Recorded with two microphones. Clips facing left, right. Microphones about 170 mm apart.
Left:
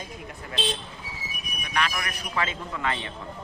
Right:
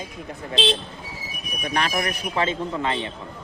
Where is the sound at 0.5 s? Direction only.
90° right.